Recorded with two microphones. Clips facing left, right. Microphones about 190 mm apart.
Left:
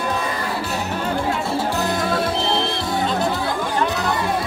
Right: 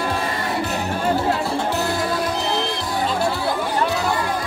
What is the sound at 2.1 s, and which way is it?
Music, 25° left (ahead or behind).